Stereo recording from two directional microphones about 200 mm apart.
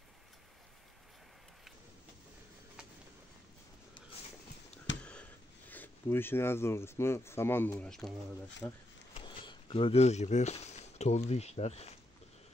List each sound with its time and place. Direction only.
4.9 s a sound: 65° left (ahead or behind)
5.7 s speech: 10° left (ahead or behind)
9.1 s speech: 25° left (ahead or behind)